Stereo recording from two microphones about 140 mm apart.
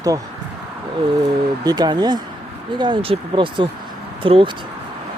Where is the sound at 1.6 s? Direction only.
30° right (ahead or behind).